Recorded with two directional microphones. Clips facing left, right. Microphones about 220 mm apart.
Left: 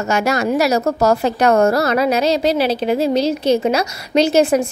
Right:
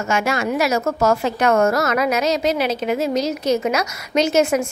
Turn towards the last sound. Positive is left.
turn(degrees=35)  # may be behind; listen again after turning